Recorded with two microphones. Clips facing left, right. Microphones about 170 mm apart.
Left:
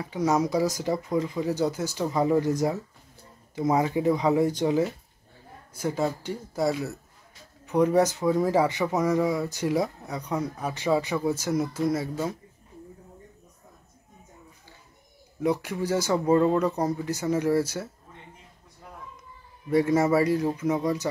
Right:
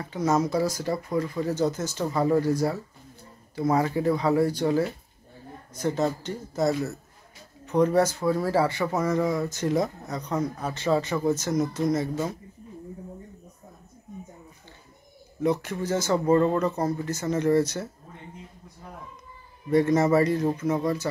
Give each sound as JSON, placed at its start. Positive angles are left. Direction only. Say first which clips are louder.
{"t": 0.0, "sound": "speech", "louder": "even", "side_deg": 10}
{"t": 5.8, "sound": "speech", "louder": "right 2 dB", "side_deg": 5}
{"t": 15.4, "sound": "speech", "louder": "even", "side_deg": 10}
{"t": 19.7, "sound": "speech", "louder": "right 1 dB", "side_deg": 10}